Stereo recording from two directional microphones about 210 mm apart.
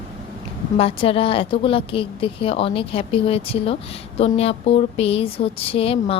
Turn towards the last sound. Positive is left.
turn(degrees=25)  # may be behind; listen again after turning